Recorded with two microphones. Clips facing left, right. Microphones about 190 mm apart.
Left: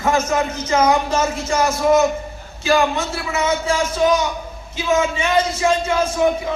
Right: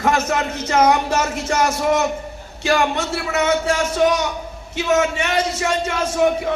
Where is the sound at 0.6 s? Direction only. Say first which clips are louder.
Right 1 dB; 65° right (ahead or behind).